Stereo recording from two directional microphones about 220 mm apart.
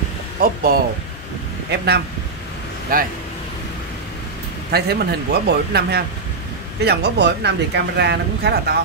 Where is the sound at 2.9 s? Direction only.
40° right (ahead or behind).